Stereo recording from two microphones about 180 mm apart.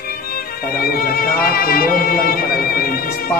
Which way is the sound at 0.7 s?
55° left (ahead or behind).